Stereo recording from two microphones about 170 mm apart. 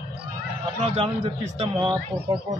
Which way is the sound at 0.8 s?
35° right (ahead or behind).